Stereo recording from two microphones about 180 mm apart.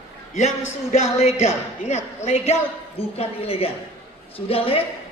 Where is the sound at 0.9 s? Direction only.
40° left (ahead or behind).